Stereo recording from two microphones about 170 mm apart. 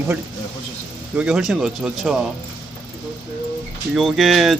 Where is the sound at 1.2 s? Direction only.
5° right (ahead or behind).